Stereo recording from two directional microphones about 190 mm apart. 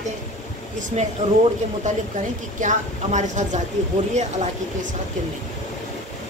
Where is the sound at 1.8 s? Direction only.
40° right (ahead or behind).